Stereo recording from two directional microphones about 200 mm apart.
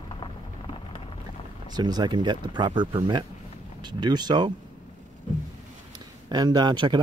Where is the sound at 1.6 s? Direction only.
20° right (ahead or behind).